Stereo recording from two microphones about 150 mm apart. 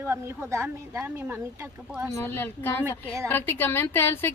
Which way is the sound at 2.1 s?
15° left (ahead or behind).